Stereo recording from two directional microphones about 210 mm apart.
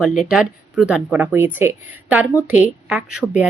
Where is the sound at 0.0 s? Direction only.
Centre (ahead or behind).